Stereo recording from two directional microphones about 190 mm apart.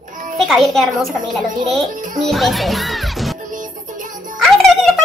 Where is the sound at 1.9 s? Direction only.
45° right (ahead or behind).